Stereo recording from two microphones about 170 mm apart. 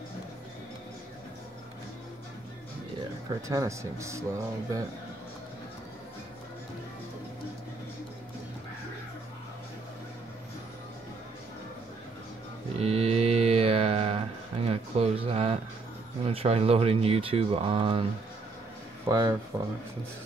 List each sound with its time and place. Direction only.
3.4 s speech: 20° right (ahead or behind)
12.7 s mantra: 35° right (ahead or behind)
16.3 s speech: 35° right (ahead or behind)
19.0 s speech: 25° right (ahead or behind)